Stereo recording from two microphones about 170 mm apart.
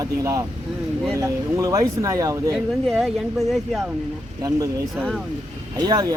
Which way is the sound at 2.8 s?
Centre (ahead or behind).